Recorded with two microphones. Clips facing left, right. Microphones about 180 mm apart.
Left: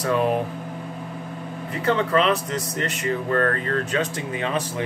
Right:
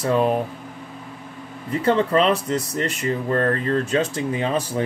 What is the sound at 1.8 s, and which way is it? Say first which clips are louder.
Speech: right 2 dB; 35° right (ahead or behind).